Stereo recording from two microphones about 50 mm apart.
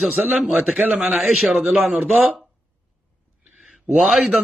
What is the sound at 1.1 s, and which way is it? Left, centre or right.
Speech, centre.